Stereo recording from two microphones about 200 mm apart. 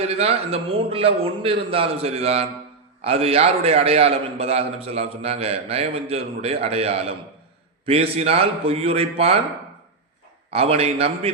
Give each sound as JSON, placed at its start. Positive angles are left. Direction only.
{"t": 0.0, "sound": "a man's voice", "side_deg": -30}
{"t": 10.5, "sound": "a man's voice", "side_deg": -30}